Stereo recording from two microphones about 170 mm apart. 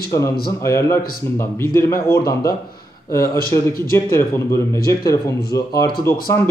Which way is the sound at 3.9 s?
15° left (ahead or behind).